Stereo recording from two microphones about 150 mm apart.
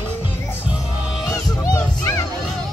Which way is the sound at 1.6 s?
20° left (ahead or behind).